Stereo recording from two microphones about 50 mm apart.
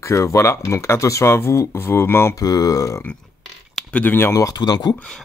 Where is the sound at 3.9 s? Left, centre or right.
Left.